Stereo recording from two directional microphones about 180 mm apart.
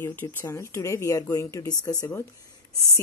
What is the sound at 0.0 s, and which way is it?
Speech, 10° left (ahead or behind).